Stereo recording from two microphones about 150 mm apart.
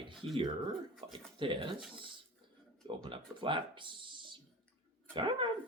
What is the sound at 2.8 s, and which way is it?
Speech, 30° right (ahead or behind).